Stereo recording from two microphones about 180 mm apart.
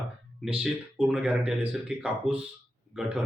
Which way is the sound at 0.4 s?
5° right (ahead or behind).